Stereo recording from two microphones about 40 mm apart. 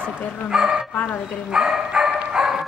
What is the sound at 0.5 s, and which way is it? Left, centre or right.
Speech, centre.